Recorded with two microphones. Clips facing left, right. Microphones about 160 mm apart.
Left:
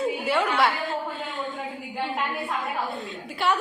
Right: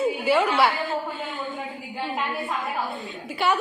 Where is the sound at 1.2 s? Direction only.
Centre (ahead or behind).